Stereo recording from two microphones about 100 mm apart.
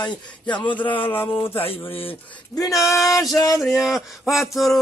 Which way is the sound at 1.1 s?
20° left (ahead or behind).